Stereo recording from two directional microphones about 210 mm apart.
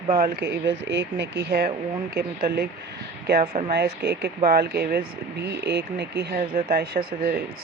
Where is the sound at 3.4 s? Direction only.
25° right (ahead or behind).